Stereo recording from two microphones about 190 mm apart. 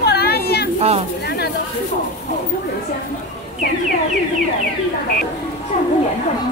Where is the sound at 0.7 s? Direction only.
35° right (ahead or behind).